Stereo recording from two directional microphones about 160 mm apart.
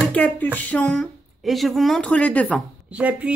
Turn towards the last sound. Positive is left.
turn(degrees=-10)  # may be behind; listen again after turning